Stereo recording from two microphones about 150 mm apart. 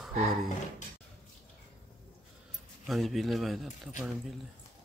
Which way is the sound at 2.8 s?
Centre (ahead or behind).